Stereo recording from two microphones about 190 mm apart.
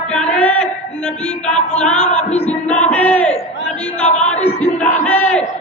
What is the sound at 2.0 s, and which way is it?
Speech, 35° left (ahead or behind).